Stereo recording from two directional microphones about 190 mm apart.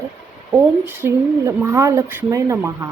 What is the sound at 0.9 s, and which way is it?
Speech, 15° right (ahead or behind).